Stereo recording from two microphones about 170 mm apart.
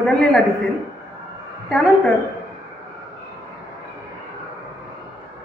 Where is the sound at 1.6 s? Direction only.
5° left (ahead or behind).